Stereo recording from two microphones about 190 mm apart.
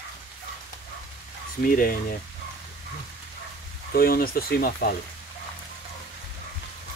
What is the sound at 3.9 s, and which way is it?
Speech, 50° left (ahead or behind).